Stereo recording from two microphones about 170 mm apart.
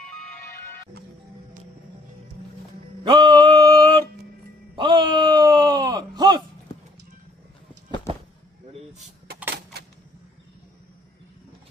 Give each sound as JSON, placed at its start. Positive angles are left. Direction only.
{"t": 3.0, "sound": "music", "side_deg": -25}
{"t": 4.7, "sound": "groan", "side_deg": -25}